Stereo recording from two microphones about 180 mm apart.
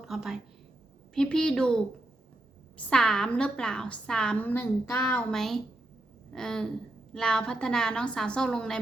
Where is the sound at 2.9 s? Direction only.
5° left (ahead or behind).